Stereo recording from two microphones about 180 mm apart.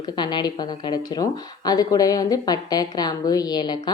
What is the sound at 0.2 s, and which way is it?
Speech, 25° left (ahead or behind).